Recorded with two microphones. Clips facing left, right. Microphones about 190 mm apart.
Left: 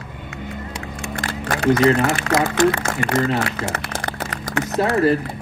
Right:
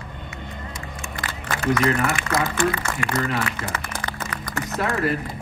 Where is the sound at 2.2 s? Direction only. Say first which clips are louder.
Left 5 dB; 75° left (ahead or behind).